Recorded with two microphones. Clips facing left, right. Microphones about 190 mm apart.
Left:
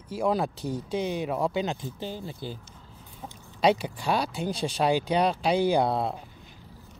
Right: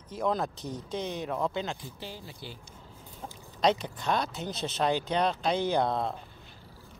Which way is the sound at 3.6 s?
10° left (ahead or behind).